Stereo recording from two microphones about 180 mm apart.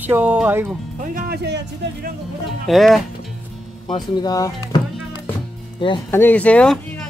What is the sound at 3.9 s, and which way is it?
Speech, 20° left (ahead or behind).